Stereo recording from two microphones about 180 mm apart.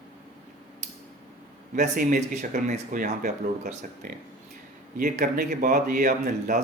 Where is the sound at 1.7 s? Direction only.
50° right (ahead or behind).